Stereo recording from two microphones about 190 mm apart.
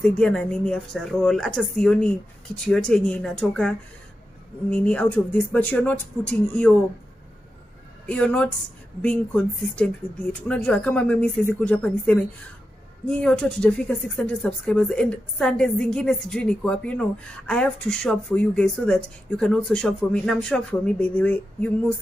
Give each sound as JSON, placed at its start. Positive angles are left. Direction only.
{"t": 0.0, "sound": "a woman's voice", "side_deg": 5}
{"t": 8.1, "sound": "a woman's voice", "side_deg": 5}